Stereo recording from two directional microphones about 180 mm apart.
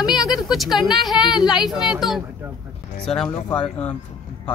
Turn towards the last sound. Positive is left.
turn(degrees=5)  # may be behind; listen again after turning